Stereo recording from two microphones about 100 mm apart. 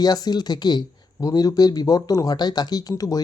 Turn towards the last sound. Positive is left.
turn(degrees=35)  # may be behind; listen again after turning